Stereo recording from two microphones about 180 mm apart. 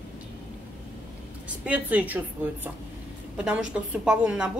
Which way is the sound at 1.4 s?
10° right (ahead or behind).